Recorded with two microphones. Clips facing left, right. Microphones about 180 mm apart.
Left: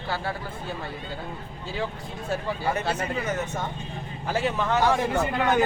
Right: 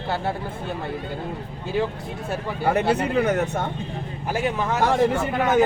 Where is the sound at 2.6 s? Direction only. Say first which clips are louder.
Right 10 dB; 65° right (ahead or behind).